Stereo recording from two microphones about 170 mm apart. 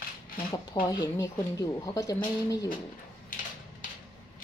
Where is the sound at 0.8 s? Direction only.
20° left (ahead or behind).